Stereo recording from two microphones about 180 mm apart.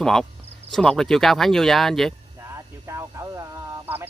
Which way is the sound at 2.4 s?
15° right (ahead or behind).